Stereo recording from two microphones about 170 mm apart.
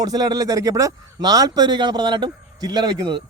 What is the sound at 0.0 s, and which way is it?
Speech, 20° right (ahead or behind).